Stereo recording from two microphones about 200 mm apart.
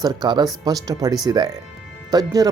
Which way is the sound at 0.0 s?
20° right (ahead or behind).